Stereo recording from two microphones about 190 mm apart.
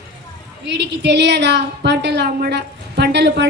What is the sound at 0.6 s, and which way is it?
A woman's voice, 65° right (ahead or behind).